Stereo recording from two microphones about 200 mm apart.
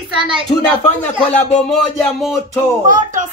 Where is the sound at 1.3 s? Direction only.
5° left (ahead or behind).